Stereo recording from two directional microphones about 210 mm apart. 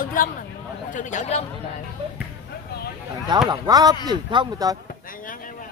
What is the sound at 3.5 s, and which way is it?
Speech, 20° right (ahead or behind).